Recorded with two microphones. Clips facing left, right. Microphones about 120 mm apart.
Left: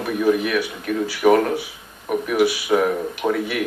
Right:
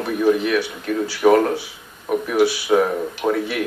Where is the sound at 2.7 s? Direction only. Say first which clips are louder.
Right 1 dB; 20° right (ahead or behind).